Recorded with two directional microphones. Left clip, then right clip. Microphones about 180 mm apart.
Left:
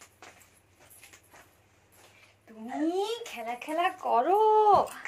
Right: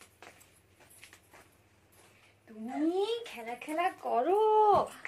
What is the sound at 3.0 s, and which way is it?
Speech, 15° right (ahead or behind).